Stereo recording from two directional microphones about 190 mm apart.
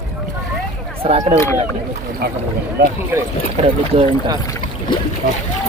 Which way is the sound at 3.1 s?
10° right (ahead or behind).